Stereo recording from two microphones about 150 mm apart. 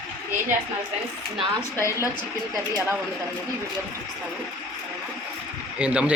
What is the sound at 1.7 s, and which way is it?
Speech, 20° left (ahead or behind).